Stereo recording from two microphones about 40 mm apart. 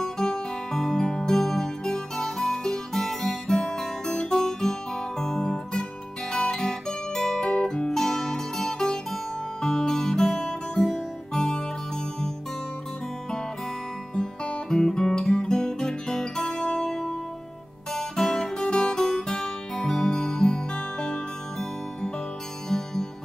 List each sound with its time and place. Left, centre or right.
0.0 s music: centre
3.5 s guitar: centre
5.2 s music: centre
7.9 s music: centre
14.7 s guitar: centre
17.9 s music: centre